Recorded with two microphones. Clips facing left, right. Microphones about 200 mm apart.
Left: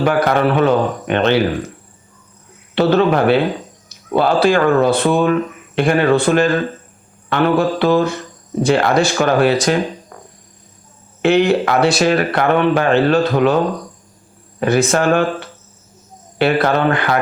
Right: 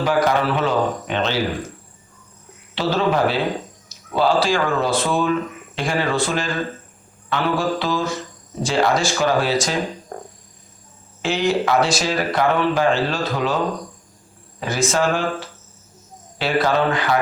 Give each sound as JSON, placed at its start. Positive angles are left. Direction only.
{"t": 0.0, "sound": "speech", "side_deg": 60}
{"t": 2.7, "sound": "speech", "side_deg": 60}
{"t": 10.1, "sound": "a sound", "side_deg": -45}
{"t": 11.2, "sound": "speech", "side_deg": 60}
{"t": 14.6, "sound": "speech", "side_deg": 60}